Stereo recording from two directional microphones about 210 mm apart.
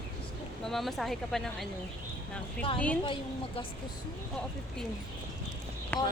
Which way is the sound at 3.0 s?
25° left (ahead or behind).